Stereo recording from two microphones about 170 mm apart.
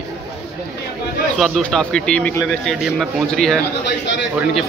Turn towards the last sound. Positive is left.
turn(degrees=90)